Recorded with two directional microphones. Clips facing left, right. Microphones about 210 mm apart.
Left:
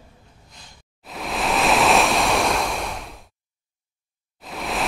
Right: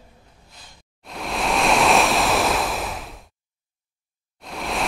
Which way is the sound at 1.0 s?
Centre (ahead or behind).